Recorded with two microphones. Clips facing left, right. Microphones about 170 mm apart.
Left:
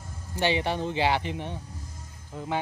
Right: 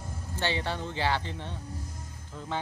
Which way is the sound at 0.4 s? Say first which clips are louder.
Left 5 dB; 15° left (ahead or behind).